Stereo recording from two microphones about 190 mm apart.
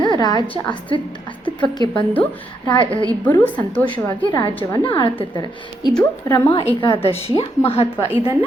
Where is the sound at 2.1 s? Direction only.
10° left (ahead or behind).